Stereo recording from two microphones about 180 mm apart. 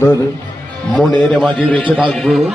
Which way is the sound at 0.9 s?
5° left (ahead or behind).